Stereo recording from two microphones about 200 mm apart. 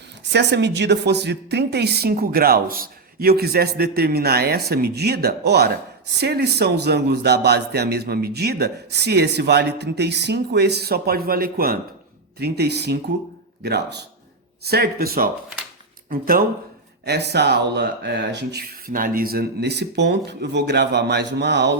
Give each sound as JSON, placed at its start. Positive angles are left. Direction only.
{"t": 0.3, "sound": "a woman's voice", "side_deg": -55}